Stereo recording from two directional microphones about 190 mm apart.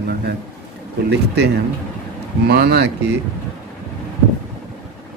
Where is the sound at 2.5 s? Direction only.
60° right (ahead or behind).